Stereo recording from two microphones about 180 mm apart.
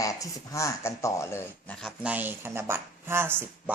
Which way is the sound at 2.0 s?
10° right (ahead or behind).